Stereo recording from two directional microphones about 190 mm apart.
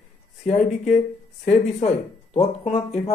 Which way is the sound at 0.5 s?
40° left (ahead or behind).